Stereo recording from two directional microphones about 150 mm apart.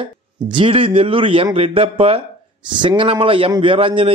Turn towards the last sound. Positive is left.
turn(degrees=-35)  # may be behind; listen again after turning